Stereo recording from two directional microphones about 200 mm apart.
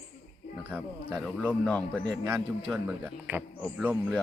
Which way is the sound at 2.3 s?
5° right (ahead or behind).